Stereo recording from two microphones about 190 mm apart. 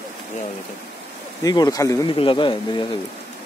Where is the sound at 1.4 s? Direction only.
20° left (ahead or behind).